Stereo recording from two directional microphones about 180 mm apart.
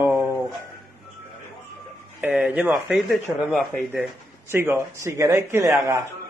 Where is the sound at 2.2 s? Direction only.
10° right (ahead or behind).